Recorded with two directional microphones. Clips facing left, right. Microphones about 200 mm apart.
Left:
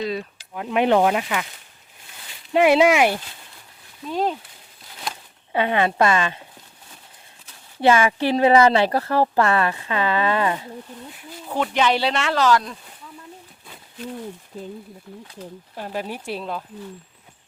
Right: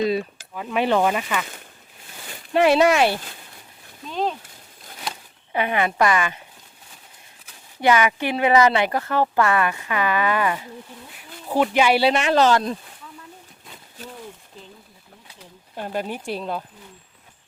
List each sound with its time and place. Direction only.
0.5 s speech: 15° left (ahead or behind)
2.5 s speech: 15° left (ahead or behind)
5.5 s speech: 25° left (ahead or behind)
7.8 s speech: 30° left (ahead or behind)
11.4 s speech: 10° right (ahead or behind); by 12.7 s 25° right (ahead or behind)
14.5 s speech: 50° left (ahead or behind)
15.8 s speech: 5° left (ahead or behind)